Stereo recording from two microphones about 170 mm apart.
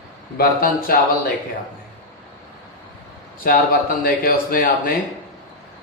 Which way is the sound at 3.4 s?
60° left (ahead or behind).